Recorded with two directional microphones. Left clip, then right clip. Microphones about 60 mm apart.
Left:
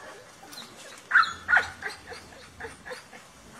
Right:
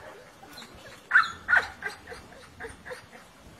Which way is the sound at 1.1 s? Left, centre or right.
Right.